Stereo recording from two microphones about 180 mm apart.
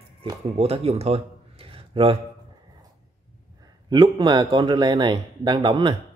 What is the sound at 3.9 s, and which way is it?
Speech, 25° right (ahead or behind).